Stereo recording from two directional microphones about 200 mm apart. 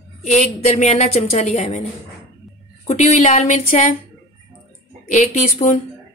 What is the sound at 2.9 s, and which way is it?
A woman's voice, 35° left (ahead or behind).